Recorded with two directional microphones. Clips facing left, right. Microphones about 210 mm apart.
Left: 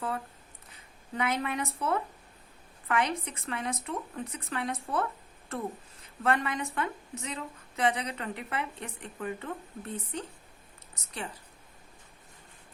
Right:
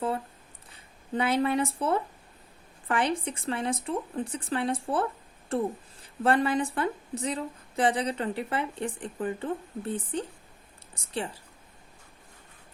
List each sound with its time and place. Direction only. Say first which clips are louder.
1.1 s a woman's voice: right 6 dB; 30° right (ahead or behind)